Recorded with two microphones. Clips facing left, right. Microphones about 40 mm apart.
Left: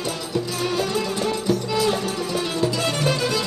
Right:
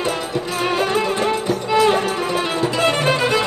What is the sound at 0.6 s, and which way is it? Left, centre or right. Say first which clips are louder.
Music: right 7 dB; right.